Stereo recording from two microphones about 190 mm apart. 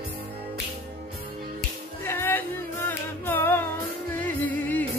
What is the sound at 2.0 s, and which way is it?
Music, 10° left (ahead or behind).